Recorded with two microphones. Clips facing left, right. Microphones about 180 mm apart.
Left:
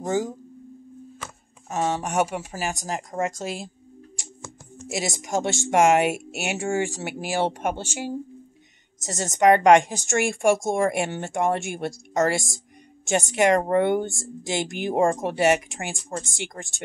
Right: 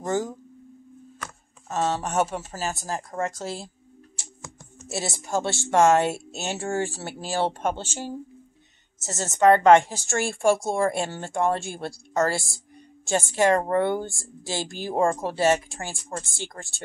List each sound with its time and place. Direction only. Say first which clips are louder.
0.0 s a woman's voice: left 1 dB; 10° left (ahead or behind)
4.8 s a woman's voice: left 2 dB; 15° left (ahead or behind)